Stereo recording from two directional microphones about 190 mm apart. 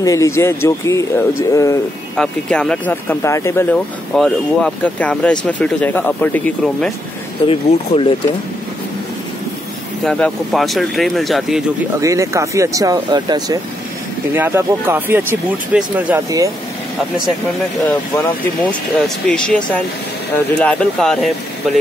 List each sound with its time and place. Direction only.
0.0 s speech: 15° left (ahead or behind)
2.1 s speech: 5° left (ahead or behind)
4.1 s speech: centre (ahead or behind)
7.4 s speech: 30° left (ahead or behind)
10.0 s speech: 5° left (ahead or behind)
12.0 s speech: 15° right (ahead or behind)
17.8 s speech: 10° left (ahead or behind)